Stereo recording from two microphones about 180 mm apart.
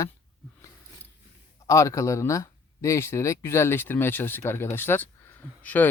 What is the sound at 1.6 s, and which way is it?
Speech, 15° left (ahead or behind).